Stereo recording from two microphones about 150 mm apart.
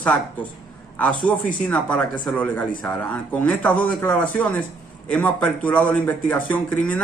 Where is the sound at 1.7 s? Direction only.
10° left (ahead or behind).